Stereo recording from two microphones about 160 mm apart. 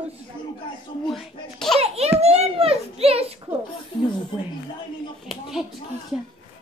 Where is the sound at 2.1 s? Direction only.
40° right (ahead or behind).